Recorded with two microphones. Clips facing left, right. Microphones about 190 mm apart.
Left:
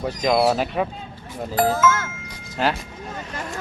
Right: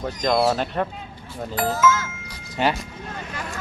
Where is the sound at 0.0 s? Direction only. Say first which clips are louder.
Left 1 dB; 10° left (ahead or behind).